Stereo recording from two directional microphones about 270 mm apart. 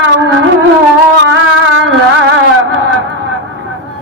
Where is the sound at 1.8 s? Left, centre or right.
Right.